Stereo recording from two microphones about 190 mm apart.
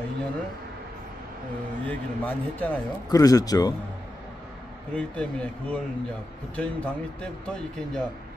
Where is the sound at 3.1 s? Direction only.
20° left (ahead or behind).